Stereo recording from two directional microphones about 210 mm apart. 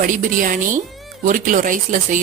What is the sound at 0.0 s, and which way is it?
Speech, 40° right (ahead or behind).